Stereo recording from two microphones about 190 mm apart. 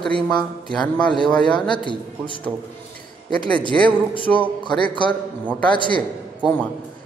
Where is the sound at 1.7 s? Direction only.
25° left (ahead or behind).